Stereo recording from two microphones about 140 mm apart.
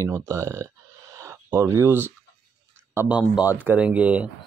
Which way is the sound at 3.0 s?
10° right (ahead or behind).